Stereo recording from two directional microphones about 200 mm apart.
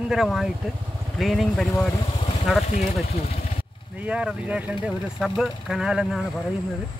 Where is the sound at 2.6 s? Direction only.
35° left (ahead or behind).